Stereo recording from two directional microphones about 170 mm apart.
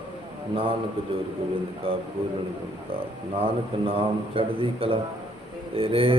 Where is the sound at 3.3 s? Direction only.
35° right (ahead or behind).